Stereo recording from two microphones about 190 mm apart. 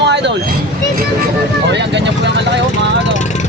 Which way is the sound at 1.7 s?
65° right (ahead or behind).